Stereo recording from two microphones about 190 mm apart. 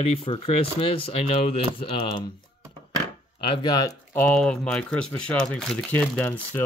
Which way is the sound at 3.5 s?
20° left (ahead or behind).